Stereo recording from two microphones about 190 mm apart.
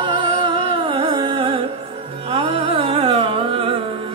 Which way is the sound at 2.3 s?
30° right (ahead or behind).